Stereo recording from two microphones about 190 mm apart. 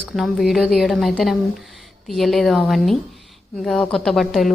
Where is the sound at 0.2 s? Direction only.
Centre (ahead or behind).